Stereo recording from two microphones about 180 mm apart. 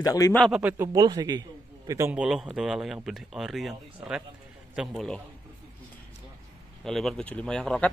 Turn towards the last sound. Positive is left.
turn(degrees=5)  # may be behind; listen again after turning